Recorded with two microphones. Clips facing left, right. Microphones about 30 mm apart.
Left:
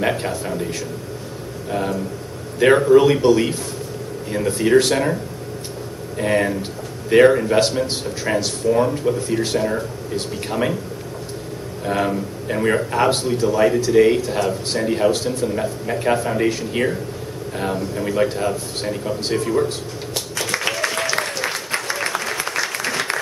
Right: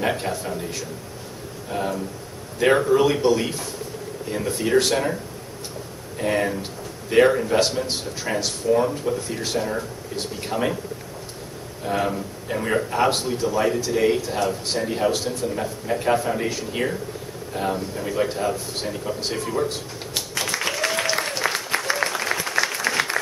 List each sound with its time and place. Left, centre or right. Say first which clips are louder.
0.0 s speech: left 3 dB; centre
11.8 s speech: left 3 dB; centre
20.2 s music: even; centre
20.5 s applause: left 2 dB; centre